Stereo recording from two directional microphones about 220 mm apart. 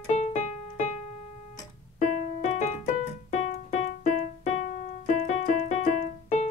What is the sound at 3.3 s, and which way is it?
Music, 30° left (ahead or behind).